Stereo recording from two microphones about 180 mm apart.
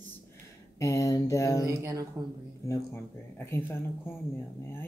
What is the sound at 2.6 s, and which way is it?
Speech, 15° left (ahead or behind).